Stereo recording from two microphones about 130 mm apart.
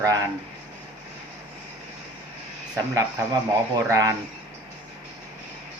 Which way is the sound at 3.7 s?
25° right (ahead or behind).